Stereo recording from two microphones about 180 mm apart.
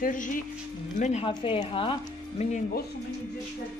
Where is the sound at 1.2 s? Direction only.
30° left (ahead or behind).